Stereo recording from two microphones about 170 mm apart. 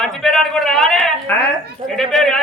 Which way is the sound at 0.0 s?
Centre (ahead or behind).